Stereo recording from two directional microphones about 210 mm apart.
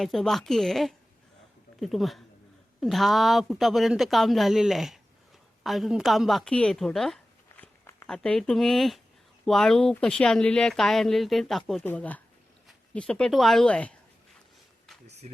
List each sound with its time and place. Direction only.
0.0 s a woman's voice: centre (ahead or behind)
15.0 s speech: 30° right (ahead or behind)